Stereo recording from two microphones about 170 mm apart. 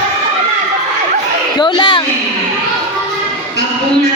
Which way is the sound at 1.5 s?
25° left (ahead or behind).